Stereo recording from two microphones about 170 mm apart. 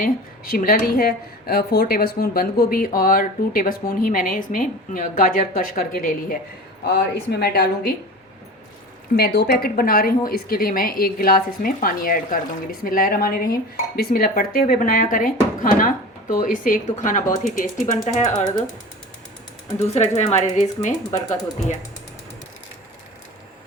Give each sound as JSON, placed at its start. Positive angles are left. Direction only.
{"t": 0.0, "sound": "a woman's voice", "side_deg": 55}
{"t": 6.8, "sound": "a woman's voice", "side_deg": 75}
{"t": 9.1, "sound": "a woman's voice", "side_deg": 65}
{"t": 19.9, "sound": "speech", "side_deg": 40}